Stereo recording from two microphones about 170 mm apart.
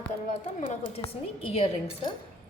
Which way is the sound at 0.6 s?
40° left (ahead or behind).